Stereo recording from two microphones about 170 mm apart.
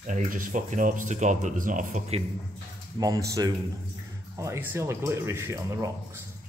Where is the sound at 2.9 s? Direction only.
20° right (ahead or behind).